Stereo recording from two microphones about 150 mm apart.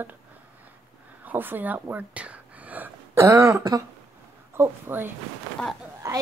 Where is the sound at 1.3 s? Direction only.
10° right (ahead or behind).